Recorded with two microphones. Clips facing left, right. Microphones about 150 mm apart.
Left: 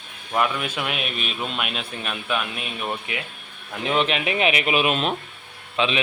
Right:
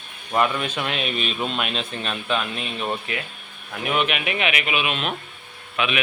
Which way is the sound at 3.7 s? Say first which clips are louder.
Left 1 dB; 25° left (ahead or behind).